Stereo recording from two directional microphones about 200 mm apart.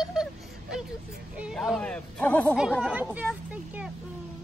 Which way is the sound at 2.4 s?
5° right (ahead or behind).